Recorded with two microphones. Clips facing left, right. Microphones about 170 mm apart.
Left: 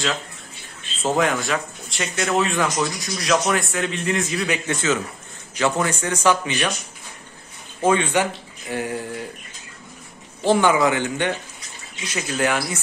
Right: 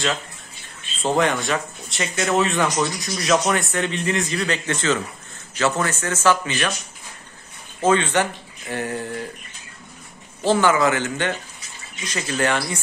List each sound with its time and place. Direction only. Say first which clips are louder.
1.0 s a man's voice: right 1 dB; 5° left (ahead or behind)
7.8 s a man's voice: even; 10° left (ahead or behind)
10.4 s a man's voice: left 1 dB; 15° left (ahead or behind)